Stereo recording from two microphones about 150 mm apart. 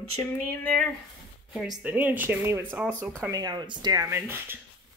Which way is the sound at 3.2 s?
25° right (ahead or behind).